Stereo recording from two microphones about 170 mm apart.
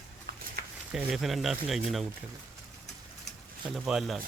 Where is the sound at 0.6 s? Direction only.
65° right (ahead or behind).